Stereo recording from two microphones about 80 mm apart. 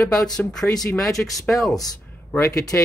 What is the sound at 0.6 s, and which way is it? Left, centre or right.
Speech, left.